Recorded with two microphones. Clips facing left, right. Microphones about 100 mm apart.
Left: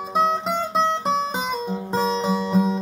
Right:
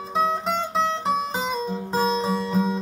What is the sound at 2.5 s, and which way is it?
Music, 15° left (ahead or behind).